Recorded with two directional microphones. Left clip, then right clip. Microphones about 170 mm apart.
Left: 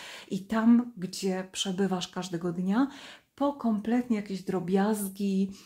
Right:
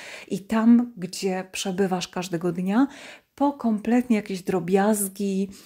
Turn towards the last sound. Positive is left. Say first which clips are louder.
# right 4 dB
turn(degrees=-35)  # may be behind; listen again after turning